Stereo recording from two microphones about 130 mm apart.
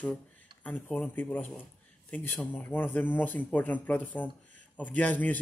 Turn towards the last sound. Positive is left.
turn(degrees=10)  # may be behind; listen again after turning